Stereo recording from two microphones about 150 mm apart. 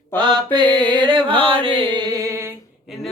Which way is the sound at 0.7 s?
10° left (ahead or behind).